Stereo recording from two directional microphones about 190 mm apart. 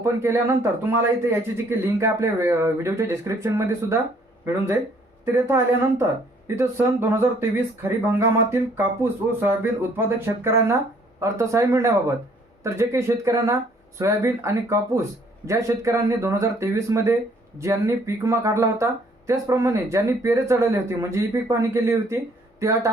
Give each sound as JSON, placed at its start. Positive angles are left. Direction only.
{"t": 0.0, "sound": "a man's voice", "side_deg": -15}